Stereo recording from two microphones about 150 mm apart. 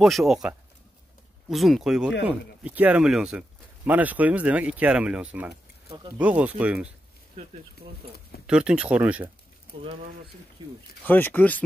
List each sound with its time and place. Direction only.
0.0 s speech: centre (ahead or behind)
7.4 s speech: 45° right (ahead or behind)
8.5 s speech: 5° right (ahead or behind)
10.6 s speech: 25° right (ahead or behind)
11.1 s speech: 15° left (ahead or behind)